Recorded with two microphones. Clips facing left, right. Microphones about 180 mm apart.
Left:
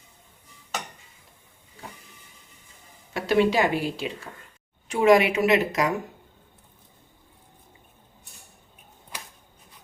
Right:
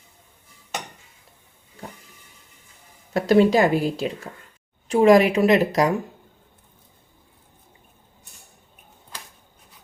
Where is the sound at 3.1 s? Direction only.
40° right (ahead or behind).